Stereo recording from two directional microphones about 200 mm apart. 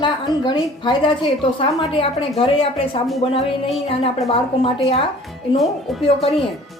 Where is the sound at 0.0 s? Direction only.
25° left (ahead or behind).